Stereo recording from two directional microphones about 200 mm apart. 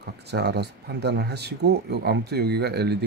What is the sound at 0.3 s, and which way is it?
Speech, 55° right (ahead or behind).